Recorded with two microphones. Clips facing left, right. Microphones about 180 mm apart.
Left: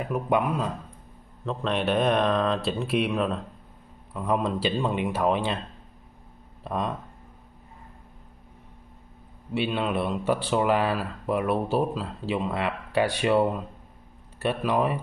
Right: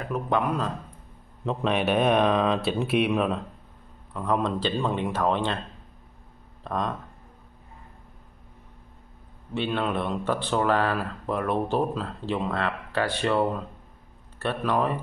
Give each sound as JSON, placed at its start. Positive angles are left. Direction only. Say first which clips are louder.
{"t": 0.0, "sound": "speech", "louder": "left 1 dB", "side_deg": 10}
{"t": 1.4, "sound": "speech", "louder": "right 2 dB", "side_deg": -10}
{"t": 4.1, "sound": "speech", "louder": "even", "side_deg": 10}
{"t": 6.6, "sound": "speech", "louder": "even", "side_deg": 10}
{"t": 9.5, "sound": "speech", "louder": "left 1 dB", "side_deg": 5}